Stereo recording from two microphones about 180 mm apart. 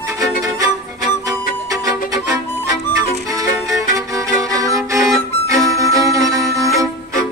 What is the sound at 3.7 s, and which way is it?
Violin, 20° right (ahead or behind).